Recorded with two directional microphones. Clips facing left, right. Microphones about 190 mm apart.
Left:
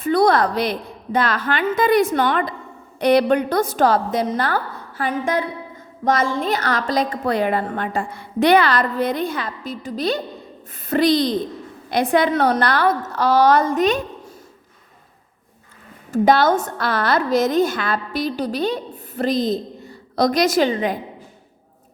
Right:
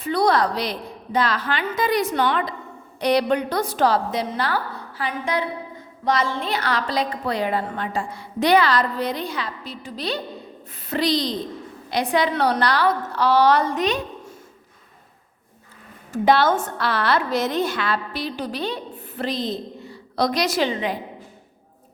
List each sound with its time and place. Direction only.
0.0 s a woman's voice: 50° left (ahead or behind)
16.1 s a woman's voice: 45° left (ahead or behind)